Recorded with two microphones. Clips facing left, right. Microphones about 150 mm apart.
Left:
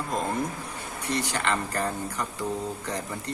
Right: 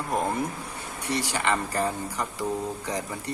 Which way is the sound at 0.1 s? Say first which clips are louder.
Right 3 dB; 10° right (ahead or behind).